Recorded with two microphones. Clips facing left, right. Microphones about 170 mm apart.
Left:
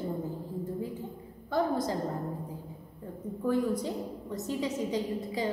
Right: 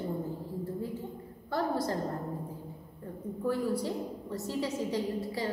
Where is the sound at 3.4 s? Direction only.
20° left (ahead or behind).